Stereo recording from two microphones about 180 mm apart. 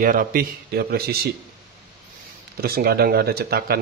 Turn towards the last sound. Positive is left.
turn(degrees=-60)  # may be behind; listen again after turning